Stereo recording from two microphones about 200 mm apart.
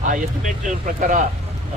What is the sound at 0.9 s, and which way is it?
Speech, 40° right (ahead or behind).